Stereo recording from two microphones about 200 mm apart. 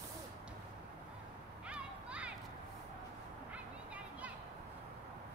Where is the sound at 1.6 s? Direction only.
5° right (ahead or behind).